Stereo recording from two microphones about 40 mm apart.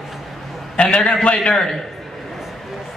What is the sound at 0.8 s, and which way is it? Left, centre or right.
Speech, left.